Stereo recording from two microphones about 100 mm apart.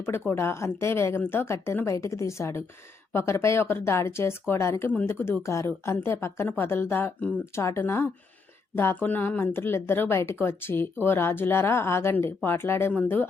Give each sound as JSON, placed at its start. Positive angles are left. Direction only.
{"t": 0.0, "sound": "a woman's voice", "side_deg": 20}